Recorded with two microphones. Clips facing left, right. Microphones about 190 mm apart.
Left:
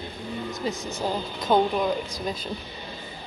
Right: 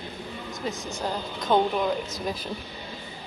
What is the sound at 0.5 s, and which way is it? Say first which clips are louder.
Speech: right 1 dB; centre (ahead or behind).